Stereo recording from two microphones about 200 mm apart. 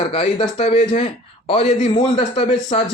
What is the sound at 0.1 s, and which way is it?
A man's voice, 25° left (ahead or behind).